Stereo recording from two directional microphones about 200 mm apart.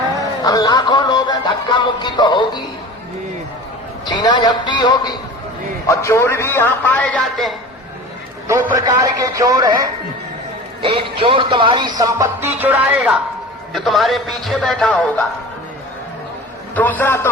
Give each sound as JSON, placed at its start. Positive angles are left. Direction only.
{"t": 0.4, "sound": "music", "side_deg": 20}
{"t": 4.0, "sound": "music", "side_deg": 20}
{"t": 5.9, "sound": "a man's voice", "side_deg": 15}
{"t": 8.4, "sound": "a man's voice", "side_deg": -15}
{"t": 10.8, "sound": "music", "side_deg": -25}
{"t": 13.7, "sound": "a man's voice", "side_deg": 0}
{"t": 16.7, "sound": "a man's voice", "side_deg": 10}